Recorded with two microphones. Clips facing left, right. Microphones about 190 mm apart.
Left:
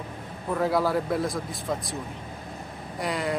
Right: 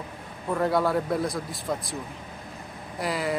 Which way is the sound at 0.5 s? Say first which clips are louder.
Even; centre (ahead or behind).